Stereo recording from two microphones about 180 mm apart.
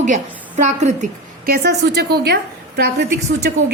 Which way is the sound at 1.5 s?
65° right (ahead or behind).